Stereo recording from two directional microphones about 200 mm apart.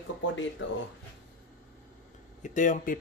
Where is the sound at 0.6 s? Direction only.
65° left (ahead or behind).